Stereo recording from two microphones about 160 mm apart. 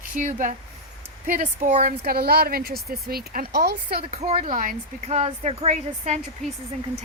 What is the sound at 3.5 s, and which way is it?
Speech, 85° right.